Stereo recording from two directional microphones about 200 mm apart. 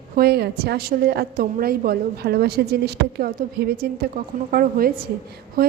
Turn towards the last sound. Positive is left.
turn(degrees=-50)  # may be behind; listen again after turning